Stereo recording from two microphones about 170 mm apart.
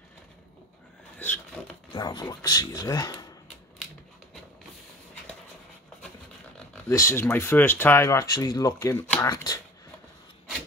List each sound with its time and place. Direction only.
1.9 s speech: 25° left (ahead or behind)
6.9 s speech: 15° left (ahead or behind)